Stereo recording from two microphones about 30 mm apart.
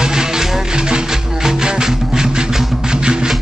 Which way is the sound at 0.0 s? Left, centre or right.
Right.